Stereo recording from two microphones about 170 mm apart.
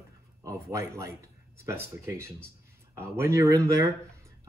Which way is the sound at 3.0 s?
15° right (ahead or behind).